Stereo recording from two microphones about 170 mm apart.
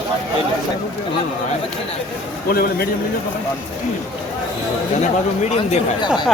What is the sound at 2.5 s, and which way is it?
Speech, 60° left (ahead or behind).